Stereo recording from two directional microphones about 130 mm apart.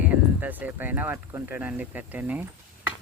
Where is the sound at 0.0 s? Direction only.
15° right (ahead or behind).